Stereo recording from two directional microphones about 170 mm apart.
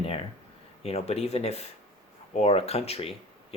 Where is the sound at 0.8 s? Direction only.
35° left (ahead or behind).